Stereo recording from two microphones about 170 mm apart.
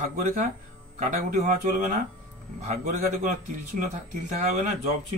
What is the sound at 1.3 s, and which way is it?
A man's voice, 50° right (ahead or behind).